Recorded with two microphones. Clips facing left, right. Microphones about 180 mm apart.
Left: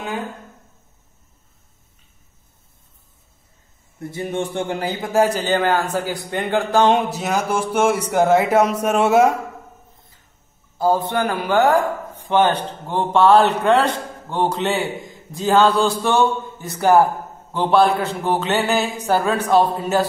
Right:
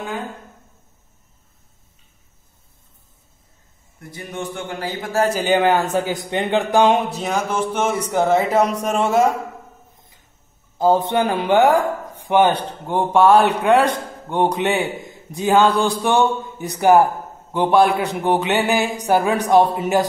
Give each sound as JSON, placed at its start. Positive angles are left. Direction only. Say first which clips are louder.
{"t": 4.0, "sound": "a man's voice", "louder": "left 5 dB", "side_deg": 25}
{"t": 5.4, "sound": "speech", "louder": "right 2 dB", "side_deg": -15}
{"t": 7.0, "sound": "speech", "louder": "left 1 dB", "side_deg": 5}
{"t": 10.8, "sound": "a man's voice", "louder": "right 2 dB", "side_deg": -20}